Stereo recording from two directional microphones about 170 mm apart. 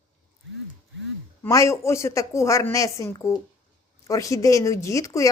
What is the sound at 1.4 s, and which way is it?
Speech, 15° left (ahead or behind).